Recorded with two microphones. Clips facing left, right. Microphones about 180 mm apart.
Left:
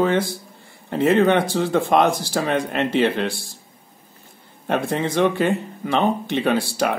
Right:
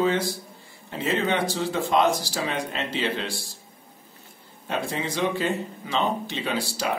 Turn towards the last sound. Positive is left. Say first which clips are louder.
# left 7 dB
turn(degrees=55)  # may be behind; listen again after turning